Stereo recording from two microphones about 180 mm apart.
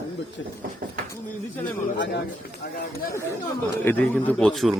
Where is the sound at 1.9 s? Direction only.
85° left.